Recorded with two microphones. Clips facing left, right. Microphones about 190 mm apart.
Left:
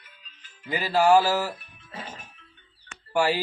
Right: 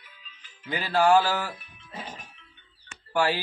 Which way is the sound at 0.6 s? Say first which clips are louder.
Left 1 dB; 5° left (ahead or behind).